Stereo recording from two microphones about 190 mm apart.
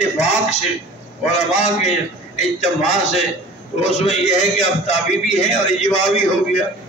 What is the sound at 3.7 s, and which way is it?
Speech, 35° left (ahead or behind).